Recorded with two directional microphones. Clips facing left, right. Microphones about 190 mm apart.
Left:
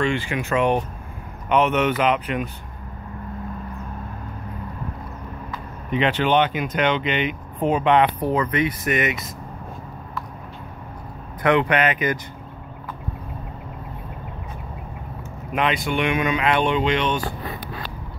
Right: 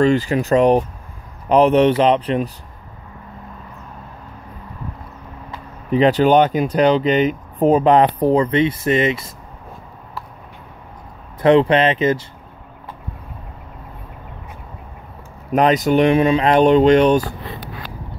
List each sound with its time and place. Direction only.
0.0 s speech: 40° right (ahead or behind)
5.5 s speech: 35° right (ahead or behind)
11.4 s speech: 30° right (ahead or behind)
15.5 s speech: 40° right (ahead or behind)